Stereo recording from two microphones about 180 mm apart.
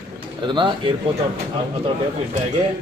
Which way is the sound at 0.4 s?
25° right (ahead or behind).